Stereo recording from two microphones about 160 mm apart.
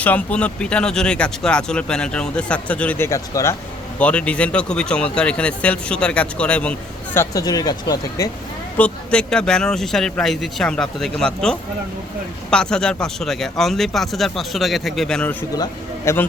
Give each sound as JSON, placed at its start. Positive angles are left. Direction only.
{"t": 0.0, "sound": "speech", "side_deg": 10}
{"t": 8.8, "sound": "speech", "side_deg": 5}
{"t": 15.5, "sound": "a man's voice", "side_deg": 25}